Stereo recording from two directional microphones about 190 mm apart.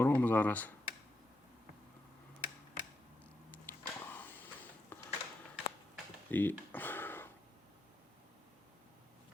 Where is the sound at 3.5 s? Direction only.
10° left (ahead or behind).